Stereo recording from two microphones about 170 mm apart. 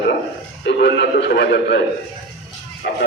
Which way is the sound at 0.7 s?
90° left.